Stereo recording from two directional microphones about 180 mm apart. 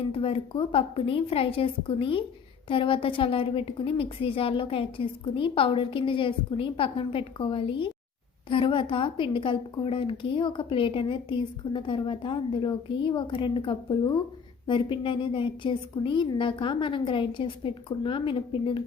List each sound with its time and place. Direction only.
0.1 s a woman's voice: 30° left (ahead or behind)